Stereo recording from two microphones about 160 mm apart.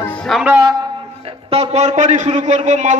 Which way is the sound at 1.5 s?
40° right (ahead or behind).